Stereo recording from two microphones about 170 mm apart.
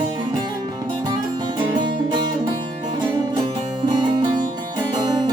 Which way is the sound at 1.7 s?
25° right (ahead or behind).